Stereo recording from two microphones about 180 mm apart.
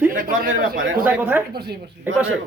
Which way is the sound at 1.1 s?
10° right (ahead or behind).